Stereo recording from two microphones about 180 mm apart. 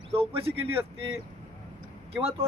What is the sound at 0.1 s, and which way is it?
Speech, 30° right (ahead or behind).